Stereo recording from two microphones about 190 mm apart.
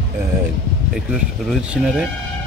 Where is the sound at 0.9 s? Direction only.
Centre (ahead or behind).